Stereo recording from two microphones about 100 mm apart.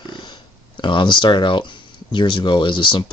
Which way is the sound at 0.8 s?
50° left (ahead or behind).